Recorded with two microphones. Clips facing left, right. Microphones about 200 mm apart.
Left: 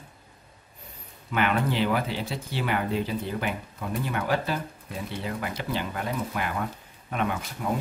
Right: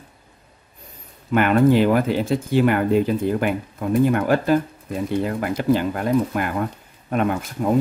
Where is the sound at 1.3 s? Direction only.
50° right (ahead or behind).